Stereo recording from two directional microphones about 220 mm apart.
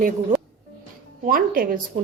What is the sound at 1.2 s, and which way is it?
Speech, 40° right (ahead or behind).